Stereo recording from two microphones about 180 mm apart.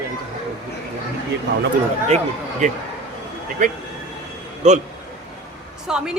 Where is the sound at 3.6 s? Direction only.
45° right (ahead or behind).